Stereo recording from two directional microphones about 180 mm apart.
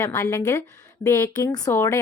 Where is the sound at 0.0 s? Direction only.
15° left (ahead or behind).